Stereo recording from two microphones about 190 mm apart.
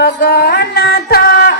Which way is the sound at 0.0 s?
60° left (ahead or behind).